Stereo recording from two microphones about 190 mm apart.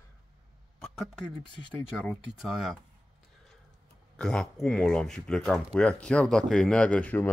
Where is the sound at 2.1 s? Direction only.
Centre (ahead or behind).